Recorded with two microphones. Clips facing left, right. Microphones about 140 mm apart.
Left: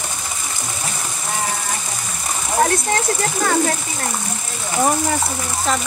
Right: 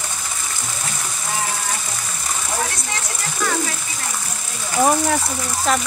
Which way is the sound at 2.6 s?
50° left (ahead or behind).